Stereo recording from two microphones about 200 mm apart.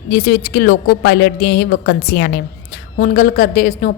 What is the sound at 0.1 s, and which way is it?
A woman's voice, 50° left (ahead or behind).